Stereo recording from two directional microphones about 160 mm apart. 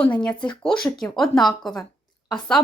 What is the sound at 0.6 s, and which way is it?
Speech, 5° left (ahead or behind).